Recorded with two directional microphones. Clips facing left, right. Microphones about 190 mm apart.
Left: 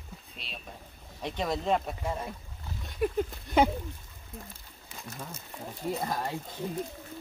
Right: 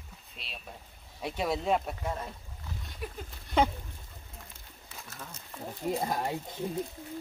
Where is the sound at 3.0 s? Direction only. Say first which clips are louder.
Left 13 dB; 55° left (ahead or behind).